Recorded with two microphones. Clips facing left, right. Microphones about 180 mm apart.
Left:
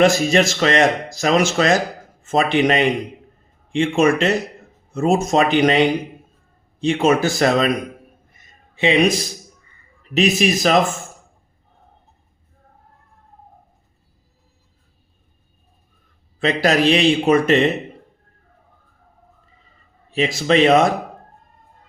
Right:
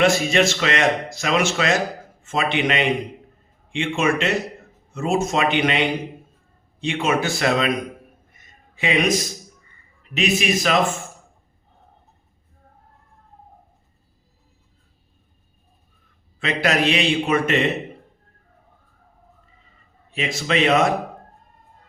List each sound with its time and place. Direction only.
0.0 s speech: 40° left (ahead or behind)
8.3 s a sound: 30° left (ahead or behind)
10.2 s speech: 35° left (ahead or behind)
16.4 s speech: 35° left (ahead or behind)
20.1 s speech: 35° left (ahead or behind)